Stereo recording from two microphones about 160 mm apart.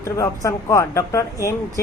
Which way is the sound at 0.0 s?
20° left (ahead or behind).